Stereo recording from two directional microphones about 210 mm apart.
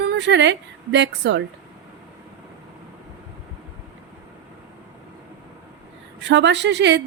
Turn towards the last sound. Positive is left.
turn(degrees=-55)  # may be behind; listen again after turning